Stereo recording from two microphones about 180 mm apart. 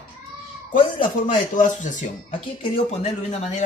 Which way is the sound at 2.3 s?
35° left (ahead or behind).